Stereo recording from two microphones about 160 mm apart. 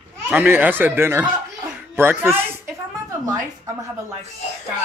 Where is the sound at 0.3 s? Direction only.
10° right (ahead or behind).